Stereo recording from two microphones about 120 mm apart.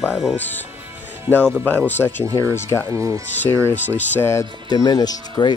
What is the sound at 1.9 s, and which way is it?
A man's voice, 15° left (ahead or behind).